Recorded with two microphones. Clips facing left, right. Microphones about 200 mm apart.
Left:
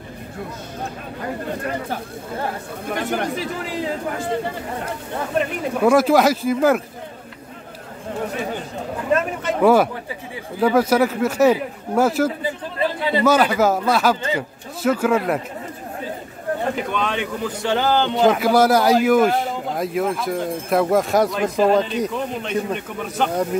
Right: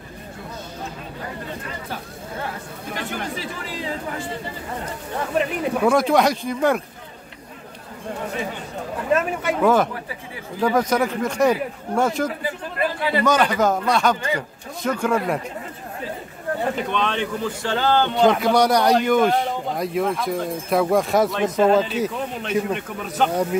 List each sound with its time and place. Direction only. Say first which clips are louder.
1.6 s speech: left 6 dB; 55° left (ahead or behind)
5.4 s speech: left 1 dB; centre (ahead or behind)
9.6 s speech: left 4 dB; 10° left (ahead or behind)
12.7 s chatter: left 1 dB; 25° left (ahead or behind)
13.2 s speech: left 3 dB; 5° left (ahead or behind)
16.9 s speech: even; 10° left (ahead or behind)